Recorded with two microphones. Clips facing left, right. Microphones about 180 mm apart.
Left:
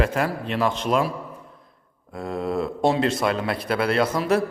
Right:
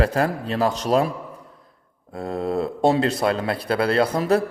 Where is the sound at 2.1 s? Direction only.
35° right (ahead or behind).